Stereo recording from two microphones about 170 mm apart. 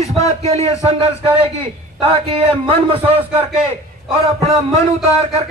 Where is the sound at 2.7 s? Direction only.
35° right (ahead or behind).